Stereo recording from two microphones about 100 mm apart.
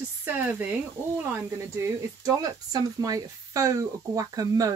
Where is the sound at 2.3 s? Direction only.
40° right (ahead or behind).